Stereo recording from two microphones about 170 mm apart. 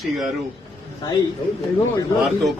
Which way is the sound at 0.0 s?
Centre (ahead or behind).